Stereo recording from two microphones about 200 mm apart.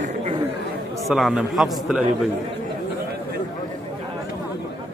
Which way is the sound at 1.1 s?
Centre (ahead or behind).